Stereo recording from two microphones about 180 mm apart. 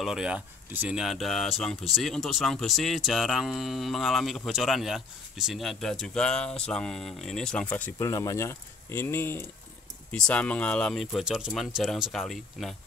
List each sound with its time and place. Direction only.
0.0 s speech: 5° right (ahead or behind)